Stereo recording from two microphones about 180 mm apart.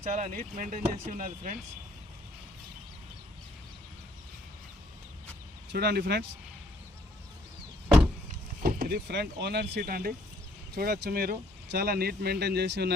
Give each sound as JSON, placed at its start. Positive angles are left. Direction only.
{"t": 0.0, "sound": "speech", "side_deg": -45}
{"t": 5.7, "sound": "speech", "side_deg": -60}
{"t": 8.6, "sound": "speech", "side_deg": -55}